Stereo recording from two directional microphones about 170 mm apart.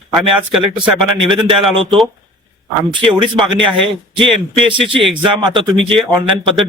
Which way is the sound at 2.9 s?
30° right (ahead or behind).